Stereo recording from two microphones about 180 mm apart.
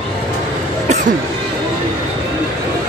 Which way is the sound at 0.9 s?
40° right (ahead or behind).